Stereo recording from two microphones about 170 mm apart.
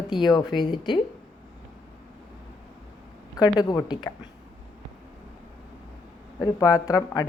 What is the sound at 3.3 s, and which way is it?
Speech, 20° left (ahead or behind).